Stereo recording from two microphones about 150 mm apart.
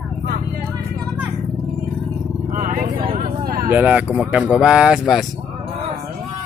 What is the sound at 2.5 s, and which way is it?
Vehicle, 65° right (ahead or behind).